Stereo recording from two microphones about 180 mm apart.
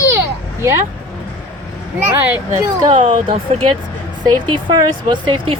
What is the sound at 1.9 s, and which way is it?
Speech, 10° right (ahead or behind).